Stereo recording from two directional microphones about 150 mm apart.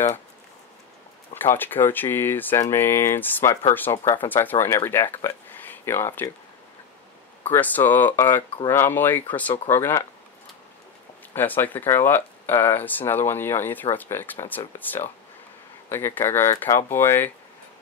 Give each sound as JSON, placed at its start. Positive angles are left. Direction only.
{"t": 1.3, "sound": "speech", "side_deg": 15}
{"t": 7.4, "sound": "speech", "side_deg": 10}
{"t": 11.3, "sound": "speech", "side_deg": 10}